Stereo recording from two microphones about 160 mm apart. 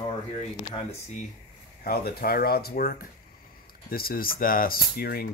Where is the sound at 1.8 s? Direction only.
70° left (ahead or behind).